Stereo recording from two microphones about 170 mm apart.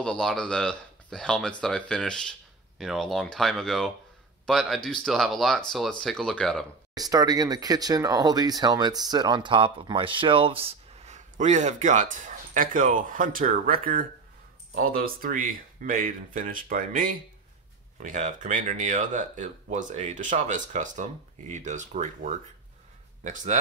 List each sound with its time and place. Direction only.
0.0 s speech: 5° left (ahead or behind)
6.9 s speech: 20° right (ahead or behind); by 23.6 s 45° right (ahead or behind)